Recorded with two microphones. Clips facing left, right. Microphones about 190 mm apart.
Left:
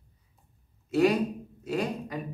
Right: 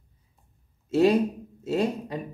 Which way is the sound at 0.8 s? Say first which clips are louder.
Right 3 dB; 25° right (ahead or behind).